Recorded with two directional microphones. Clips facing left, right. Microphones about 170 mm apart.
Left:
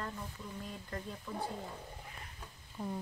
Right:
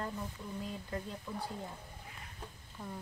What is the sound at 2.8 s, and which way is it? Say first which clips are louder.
Speech: left 5 dB; 10° left (ahead or behind).